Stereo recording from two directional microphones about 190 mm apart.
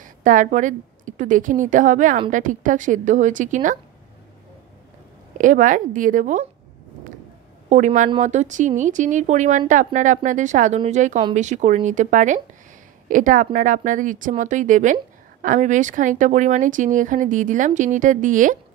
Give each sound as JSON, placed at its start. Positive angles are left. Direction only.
{"t": 0.0, "sound": "a woman's voice", "side_deg": -45}
{"t": 5.4, "sound": "speech", "side_deg": -45}
{"t": 7.7, "sound": "speech", "side_deg": -40}